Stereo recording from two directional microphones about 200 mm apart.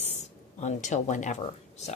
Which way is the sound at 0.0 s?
35° left (ahead or behind).